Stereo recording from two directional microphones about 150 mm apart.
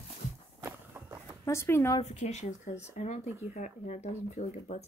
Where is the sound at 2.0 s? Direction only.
50° left (ahead or behind).